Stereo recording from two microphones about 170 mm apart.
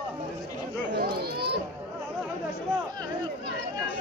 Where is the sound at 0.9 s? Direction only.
65° right (ahead or behind).